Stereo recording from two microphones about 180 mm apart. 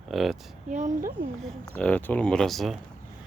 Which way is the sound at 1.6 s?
5° left (ahead or behind).